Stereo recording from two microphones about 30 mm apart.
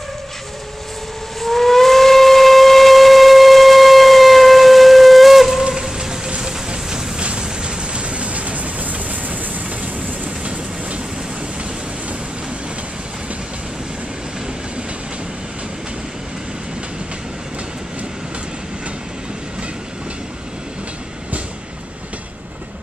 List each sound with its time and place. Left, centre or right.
1.4 s steam whistle: centre
5.6 s train: right
6.7 s vehicle: right
7.2 s vehicle: right
10.4 s train: right